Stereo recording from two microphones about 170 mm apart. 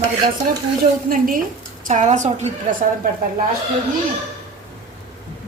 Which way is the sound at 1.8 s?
45° right (ahead or behind).